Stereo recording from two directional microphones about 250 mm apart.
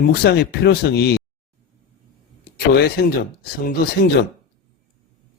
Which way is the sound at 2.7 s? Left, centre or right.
Left.